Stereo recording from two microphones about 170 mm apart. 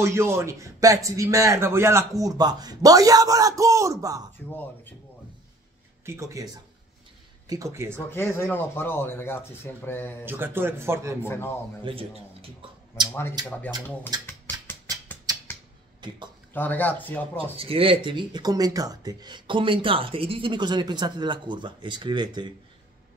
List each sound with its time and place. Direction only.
0.0 s speech: 15° right (ahead or behind)
4.5 s speech: 10° left (ahead or behind)
6.0 s speech: 15° right (ahead or behind)
8.1 s speech: 15° left (ahead or behind)
10.2 s speech: 10° right (ahead or behind)
11.2 s speech: 15° left (ahead or behind)
11.8 s a man's voice: 35° right (ahead or behind)
13.4 s speech: 25° right (ahead or behind)
14.2 s a sound: 10° left (ahead or behind)
16.0 s speech: 25° right (ahead or behind)
16.5 s speech: 10° left (ahead or behind)
17.4 s speech: 35° right (ahead or behind)